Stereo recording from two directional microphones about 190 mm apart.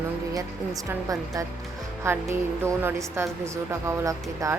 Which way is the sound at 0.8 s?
20° right (ahead or behind).